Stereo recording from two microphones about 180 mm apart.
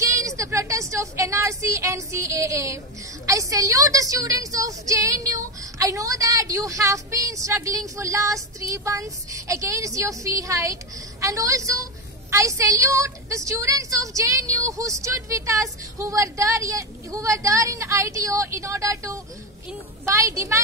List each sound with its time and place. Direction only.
0.4 s a woman's voice: 15° right (ahead or behind)